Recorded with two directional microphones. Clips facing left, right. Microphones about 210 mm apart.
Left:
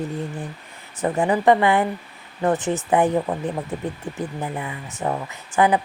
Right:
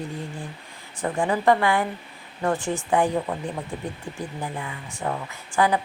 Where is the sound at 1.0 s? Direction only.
20° left (ahead or behind).